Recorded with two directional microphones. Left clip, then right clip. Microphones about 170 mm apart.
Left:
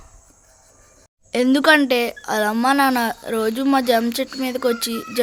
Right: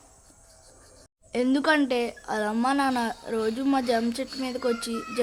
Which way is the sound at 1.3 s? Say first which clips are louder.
Left 9 dB; 30° left (ahead or behind).